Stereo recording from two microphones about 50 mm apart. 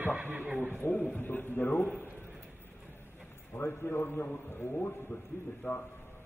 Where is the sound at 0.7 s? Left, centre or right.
Left.